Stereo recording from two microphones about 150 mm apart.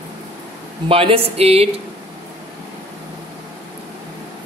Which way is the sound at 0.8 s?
40° right (ahead or behind).